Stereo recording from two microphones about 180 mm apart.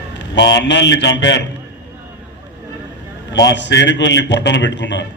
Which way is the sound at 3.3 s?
80° left.